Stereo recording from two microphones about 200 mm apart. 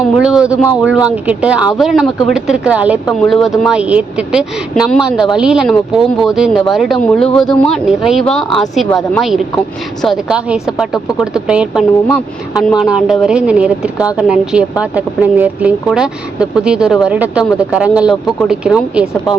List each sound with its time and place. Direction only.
0.0 s speech: 5° right (ahead or behind)